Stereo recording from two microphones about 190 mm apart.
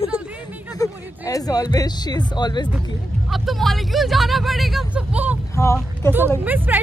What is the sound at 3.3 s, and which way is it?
Speech, centre (ahead or behind).